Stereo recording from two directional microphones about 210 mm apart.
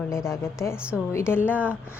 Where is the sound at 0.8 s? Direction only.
5° right (ahead or behind).